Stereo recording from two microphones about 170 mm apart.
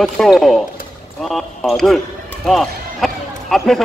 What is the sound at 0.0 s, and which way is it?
A man's voice, centre (ahead or behind).